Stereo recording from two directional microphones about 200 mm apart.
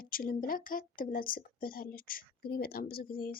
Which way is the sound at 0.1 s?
45° left (ahead or behind).